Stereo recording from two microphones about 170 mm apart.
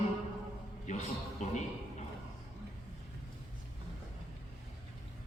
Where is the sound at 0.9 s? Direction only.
45° left (ahead or behind).